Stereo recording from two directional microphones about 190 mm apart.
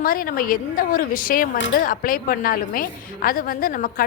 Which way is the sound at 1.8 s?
50° left (ahead or behind).